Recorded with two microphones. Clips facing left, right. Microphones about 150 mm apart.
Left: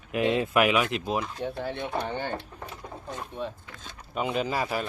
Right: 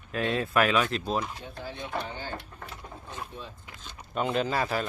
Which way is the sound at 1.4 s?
65° left (ahead or behind).